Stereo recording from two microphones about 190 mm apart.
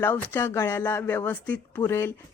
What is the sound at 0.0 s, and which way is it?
Speech, 10° left (ahead or behind).